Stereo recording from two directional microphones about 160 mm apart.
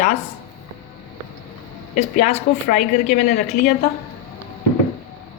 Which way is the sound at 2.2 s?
50° left (ahead or behind).